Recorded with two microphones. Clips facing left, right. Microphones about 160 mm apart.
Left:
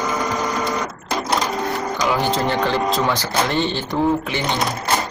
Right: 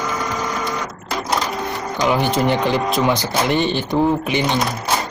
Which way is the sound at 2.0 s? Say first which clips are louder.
Right 3 dB; 20° right (ahead or behind).